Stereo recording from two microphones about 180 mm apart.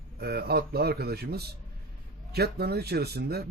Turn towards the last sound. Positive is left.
turn(degrees=-60)  # may be behind; listen again after turning